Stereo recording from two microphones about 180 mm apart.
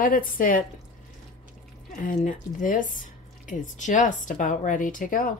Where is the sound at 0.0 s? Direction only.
50° left (ahead or behind).